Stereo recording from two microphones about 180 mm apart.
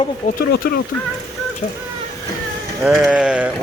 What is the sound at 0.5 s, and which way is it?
Speech, 60° left (ahead or behind).